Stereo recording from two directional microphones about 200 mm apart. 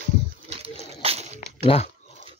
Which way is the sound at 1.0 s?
30° right (ahead or behind).